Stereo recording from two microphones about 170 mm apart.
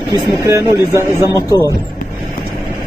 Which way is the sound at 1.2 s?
20° left (ahead or behind).